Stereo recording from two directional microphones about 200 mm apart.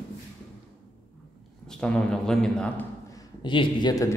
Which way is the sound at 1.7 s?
5° left (ahead or behind).